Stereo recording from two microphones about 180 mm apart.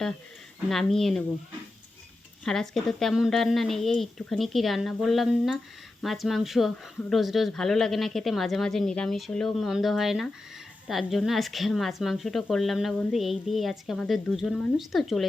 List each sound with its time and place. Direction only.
0.7 s speech: centre (ahead or behind)
2.4 s speech: 5° left (ahead or behind)